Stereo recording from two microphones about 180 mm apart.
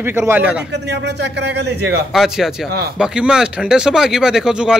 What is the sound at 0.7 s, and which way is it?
Speech, 70° right (ahead or behind).